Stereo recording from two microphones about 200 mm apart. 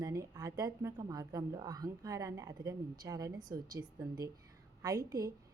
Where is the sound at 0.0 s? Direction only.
15° right (ahead or behind).